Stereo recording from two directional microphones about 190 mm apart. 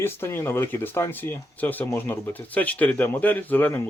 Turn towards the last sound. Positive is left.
turn(degrees=10)  # may be behind; listen again after turning